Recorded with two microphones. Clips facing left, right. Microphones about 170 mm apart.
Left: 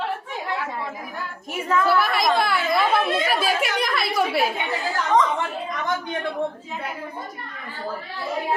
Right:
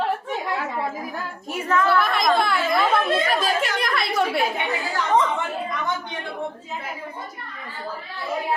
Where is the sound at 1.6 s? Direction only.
10° left (ahead or behind).